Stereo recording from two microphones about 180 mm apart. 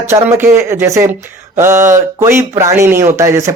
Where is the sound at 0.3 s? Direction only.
15° right (ahead or behind).